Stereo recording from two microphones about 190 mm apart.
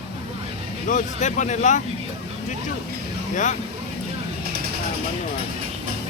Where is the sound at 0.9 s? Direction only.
40° left (ahead or behind).